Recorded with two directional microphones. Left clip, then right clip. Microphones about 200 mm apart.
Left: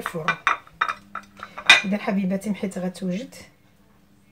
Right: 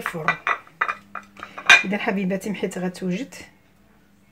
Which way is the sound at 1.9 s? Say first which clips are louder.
Right 2 dB; 50° right (ahead or behind).